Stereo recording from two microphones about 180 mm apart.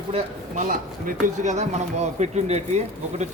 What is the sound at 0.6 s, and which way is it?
Speech, 45° right (ahead or behind).